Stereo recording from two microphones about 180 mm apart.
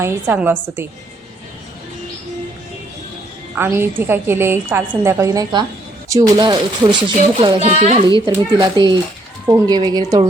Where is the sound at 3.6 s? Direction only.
10° right (ahead or behind).